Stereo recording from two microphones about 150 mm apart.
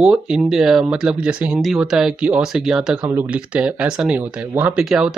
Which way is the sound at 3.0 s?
20° right (ahead or behind).